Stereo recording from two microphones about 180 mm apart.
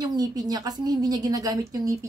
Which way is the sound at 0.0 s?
20° right (ahead or behind).